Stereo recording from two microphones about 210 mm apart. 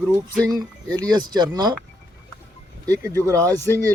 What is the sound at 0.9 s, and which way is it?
Speech, 20° right (ahead or behind).